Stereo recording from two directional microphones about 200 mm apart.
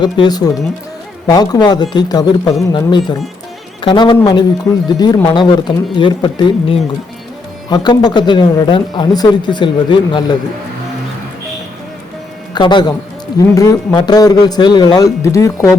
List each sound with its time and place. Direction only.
0.0 s speech: 20° left (ahead or behind)
12.5 s speech: 20° left (ahead or behind)